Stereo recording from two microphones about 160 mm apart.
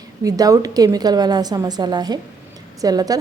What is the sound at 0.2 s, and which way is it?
A woman's voice, 20° right (ahead or behind).